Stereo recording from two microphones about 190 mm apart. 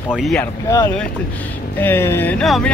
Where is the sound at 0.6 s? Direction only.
15° left (ahead or behind).